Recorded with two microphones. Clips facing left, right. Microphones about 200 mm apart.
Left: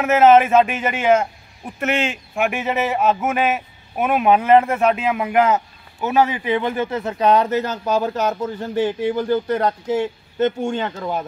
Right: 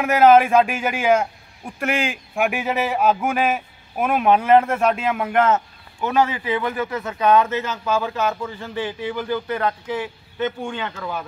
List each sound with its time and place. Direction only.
0.0 s speech: 5° left (ahead or behind); by 9.1 s 45° left (ahead or behind)
9.1 s speech: 25° left (ahead or behind)
9.6 s speech: 40° left (ahead or behind)